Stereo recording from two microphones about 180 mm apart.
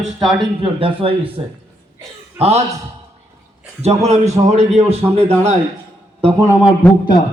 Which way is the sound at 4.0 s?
35° right (ahead or behind).